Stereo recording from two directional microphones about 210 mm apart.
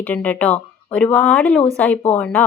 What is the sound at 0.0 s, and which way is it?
Speech, 5° left (ahead or behind).